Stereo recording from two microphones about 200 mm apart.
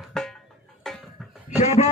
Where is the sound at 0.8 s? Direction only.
5° left (ahead or behind).